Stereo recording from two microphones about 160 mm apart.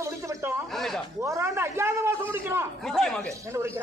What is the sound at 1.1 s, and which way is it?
A man's voice, 20° right (ahead or behind).